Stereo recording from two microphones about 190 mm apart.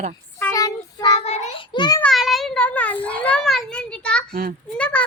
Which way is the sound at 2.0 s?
Centre (ahead or behind).